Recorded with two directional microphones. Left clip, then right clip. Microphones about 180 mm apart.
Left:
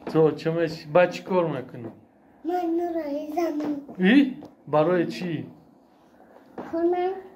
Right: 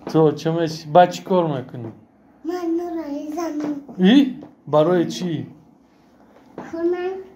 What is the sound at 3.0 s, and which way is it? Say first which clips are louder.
Child singing: right 1 dB; 5° left (ahead or behind).